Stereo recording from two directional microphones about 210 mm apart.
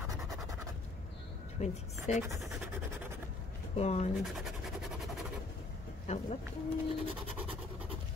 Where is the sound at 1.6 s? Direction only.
30° left (ahead or behind).